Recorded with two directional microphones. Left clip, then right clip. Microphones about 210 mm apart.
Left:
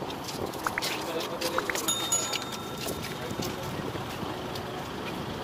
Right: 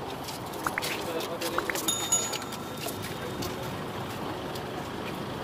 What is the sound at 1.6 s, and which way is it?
Music, centre (ahead or behind).